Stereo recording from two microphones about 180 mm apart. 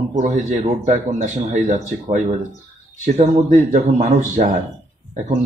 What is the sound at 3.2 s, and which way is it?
Speech, 45° right (ahead or behind).